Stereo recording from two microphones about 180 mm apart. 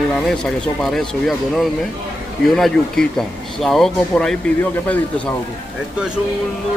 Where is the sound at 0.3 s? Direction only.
5° left (ahead or behind).